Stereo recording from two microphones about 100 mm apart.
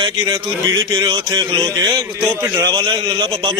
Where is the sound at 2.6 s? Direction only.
45° right (ahead or behind).